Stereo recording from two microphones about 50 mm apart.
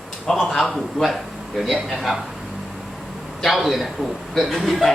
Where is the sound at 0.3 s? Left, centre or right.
Centre.